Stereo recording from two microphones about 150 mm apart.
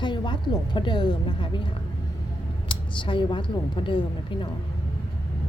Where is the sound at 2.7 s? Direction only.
35° left (ahead or behind).